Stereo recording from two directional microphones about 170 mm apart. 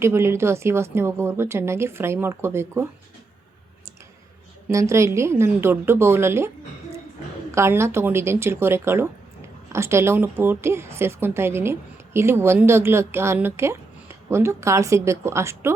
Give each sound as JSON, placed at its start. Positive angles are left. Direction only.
{"t": 0.0, "sound": "speech", "side_deg": -15}
{"t": 4.7, "sound": "speech", "side_deg": -15}
{"t": 7.5, "sound": "speech", "side_deg": -15}